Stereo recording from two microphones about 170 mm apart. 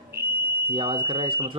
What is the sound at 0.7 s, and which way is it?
Speech, 30° right (ahead or behind).